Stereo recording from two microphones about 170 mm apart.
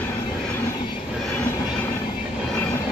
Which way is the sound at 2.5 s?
15° left (ahead or behind).